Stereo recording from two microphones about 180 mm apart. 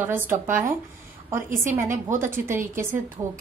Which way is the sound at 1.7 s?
15° right (ahead or behind).